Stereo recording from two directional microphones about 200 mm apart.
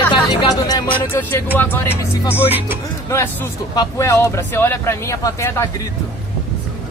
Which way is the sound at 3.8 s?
15° left (ahead or behind).